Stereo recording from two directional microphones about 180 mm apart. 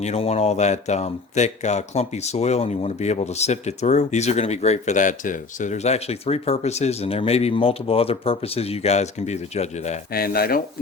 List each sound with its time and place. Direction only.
0.0 s speech: 35° left (ahead or behind)
10.1 s speech: 55° left (ahead or behind)